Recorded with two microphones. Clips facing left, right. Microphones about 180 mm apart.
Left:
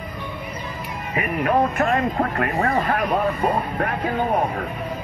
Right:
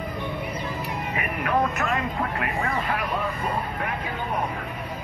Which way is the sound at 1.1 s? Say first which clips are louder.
Left 6 dB; 25° left (ahead or behind).